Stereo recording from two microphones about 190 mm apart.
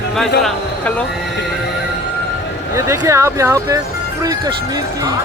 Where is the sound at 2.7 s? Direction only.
15° right (ahead or behind).